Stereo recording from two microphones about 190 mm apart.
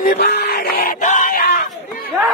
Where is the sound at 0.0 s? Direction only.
55° left (ahead or behind).